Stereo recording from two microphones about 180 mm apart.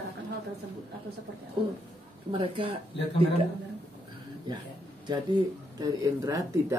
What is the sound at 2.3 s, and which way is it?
Speech, 30° right (ahead or behind).